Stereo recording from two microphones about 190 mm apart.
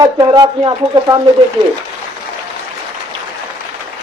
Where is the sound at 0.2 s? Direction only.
20° right (ahead or behind).